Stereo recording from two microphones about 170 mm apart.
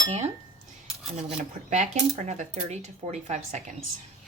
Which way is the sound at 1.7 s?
45° right (ahead or behind).